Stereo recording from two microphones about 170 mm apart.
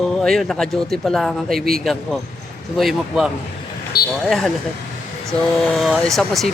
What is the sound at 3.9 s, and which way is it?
Speech, 60° left (ahead or behind).